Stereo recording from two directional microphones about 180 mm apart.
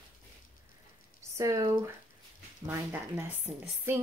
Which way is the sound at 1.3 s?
15° right (ahead or behind).